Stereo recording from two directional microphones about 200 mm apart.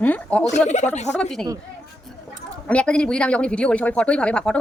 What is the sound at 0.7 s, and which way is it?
Speech, 35° left (ahead or behind).